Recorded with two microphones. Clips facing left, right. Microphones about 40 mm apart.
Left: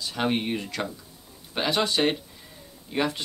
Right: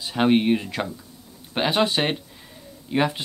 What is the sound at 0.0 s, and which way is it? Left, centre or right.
Speech, centre.